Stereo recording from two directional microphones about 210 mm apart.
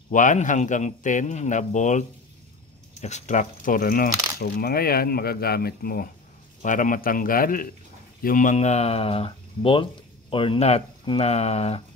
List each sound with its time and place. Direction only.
0.1 s speech: 35° left (ahead or behind)